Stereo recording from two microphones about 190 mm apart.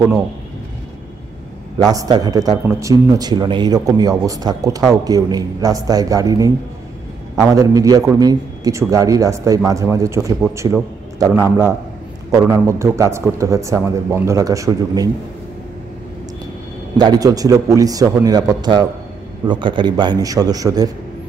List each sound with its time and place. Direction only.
1.8 s a man's voice: 20° right (ahead or behind)
7.5 s a man's voice: 20° right (ahead or behind)
16.9 s a man's voice: 20° right (ahead or behind)